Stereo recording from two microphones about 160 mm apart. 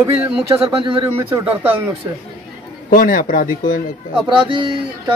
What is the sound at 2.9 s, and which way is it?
Speech, 60° left (ahead or behind).